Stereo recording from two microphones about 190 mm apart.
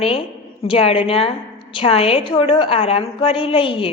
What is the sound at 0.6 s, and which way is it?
A woman's voice, 30° left (ahead or behind).